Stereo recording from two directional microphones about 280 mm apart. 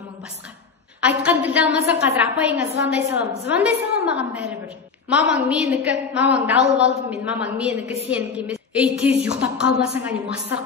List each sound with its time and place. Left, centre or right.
1.0 s a woman's voice: centre
7.8 s a woman's voice: left
8.1 s a woman's voice: centre